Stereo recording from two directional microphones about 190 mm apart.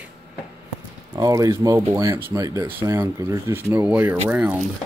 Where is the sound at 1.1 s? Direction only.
20° right (ahead or behind).